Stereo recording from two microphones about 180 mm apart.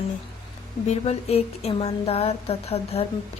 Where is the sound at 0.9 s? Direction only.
35° left (ahead or behind).